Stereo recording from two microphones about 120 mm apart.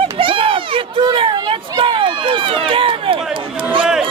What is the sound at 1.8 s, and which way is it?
Run, 45° right (ahead or behind).